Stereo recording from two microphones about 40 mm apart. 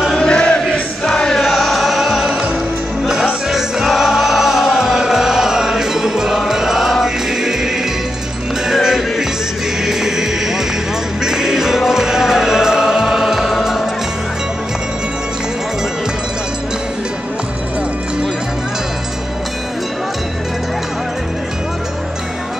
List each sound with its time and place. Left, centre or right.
0.2 s a sound: left
0.7 s music: centre
1.4 s music: centre
3.4 s music: centre
8.7 s music: centre